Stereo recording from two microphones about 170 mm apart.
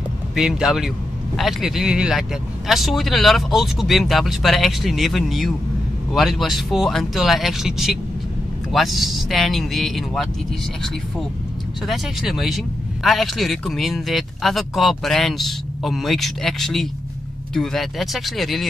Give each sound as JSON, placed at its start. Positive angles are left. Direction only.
{"t": 0.4, "sound": "speech", "side_deg": -5}
{"t": 11.9, "sound": "speech", "side_deg": 0}